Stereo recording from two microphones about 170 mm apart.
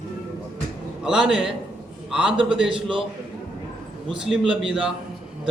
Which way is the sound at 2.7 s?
30° right (ahead or behind).